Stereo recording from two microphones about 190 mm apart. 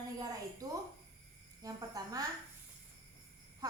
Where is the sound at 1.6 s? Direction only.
20° right (ahead or behind).